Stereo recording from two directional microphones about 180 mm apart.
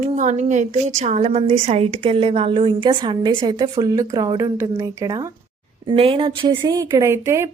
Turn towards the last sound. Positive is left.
turn(degrees=-15)  # may be behind; listen again after turning